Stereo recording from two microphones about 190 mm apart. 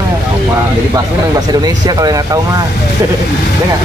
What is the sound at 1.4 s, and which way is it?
Speech, 20° right (ahead or behind).